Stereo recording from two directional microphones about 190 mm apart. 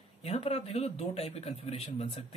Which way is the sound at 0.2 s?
30° left (ahead or behind).